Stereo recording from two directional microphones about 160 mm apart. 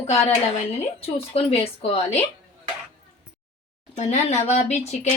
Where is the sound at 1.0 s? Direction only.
35° left (ahead or behind).